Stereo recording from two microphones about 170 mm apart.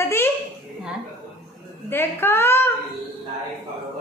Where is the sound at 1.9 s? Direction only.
15° left (ahead or behind).